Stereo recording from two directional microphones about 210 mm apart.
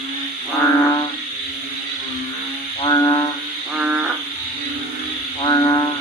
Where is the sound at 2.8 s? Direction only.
25° left (ahead or behind).